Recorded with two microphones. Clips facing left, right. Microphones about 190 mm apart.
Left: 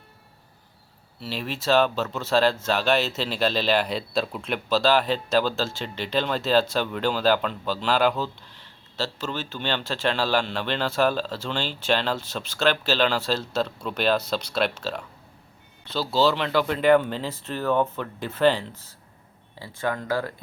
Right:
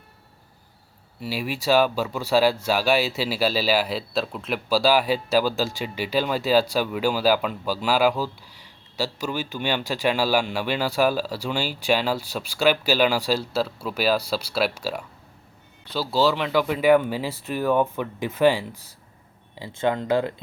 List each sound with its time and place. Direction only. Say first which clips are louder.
1.2 s speech: right 3 dB; 10° right (ahead or behind)
19.5 s speech: right 4 dB; 20° right (ahead or behind)